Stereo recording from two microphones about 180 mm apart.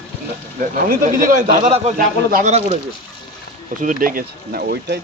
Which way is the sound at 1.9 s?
50° right (ahead or behind).